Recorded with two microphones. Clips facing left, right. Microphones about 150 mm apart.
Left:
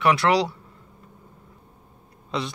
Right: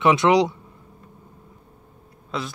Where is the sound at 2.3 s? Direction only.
Centre (ahead or behind).